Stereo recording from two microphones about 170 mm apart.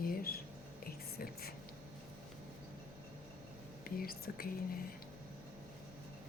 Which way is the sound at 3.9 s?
60° left (ahead or behind).